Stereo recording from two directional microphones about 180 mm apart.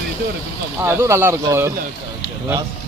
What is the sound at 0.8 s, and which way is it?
Speech, 15° right (ahead or behind).